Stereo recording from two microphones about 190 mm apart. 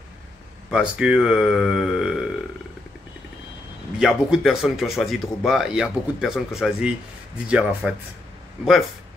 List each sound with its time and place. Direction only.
0.7 s speech: 5° right (ahead or behind)
4.0 s speech: centre (ahead or behind)